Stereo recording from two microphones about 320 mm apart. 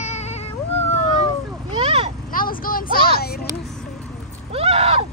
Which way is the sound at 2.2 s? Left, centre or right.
Left.